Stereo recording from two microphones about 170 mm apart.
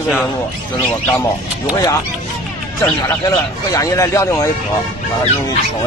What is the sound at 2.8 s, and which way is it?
Speech, 20° left (ahead or behind).